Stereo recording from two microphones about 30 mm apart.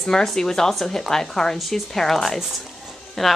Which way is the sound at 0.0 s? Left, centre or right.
Centre.